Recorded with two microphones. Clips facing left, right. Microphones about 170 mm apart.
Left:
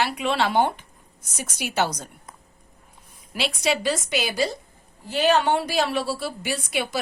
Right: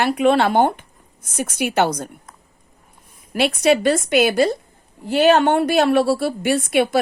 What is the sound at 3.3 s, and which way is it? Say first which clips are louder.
A woman's voice: right 8 dB; 55° right (ahead or behind).